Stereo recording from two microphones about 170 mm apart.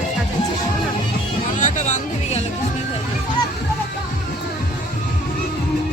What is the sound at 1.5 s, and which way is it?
Music, 45° left (ahead or behind).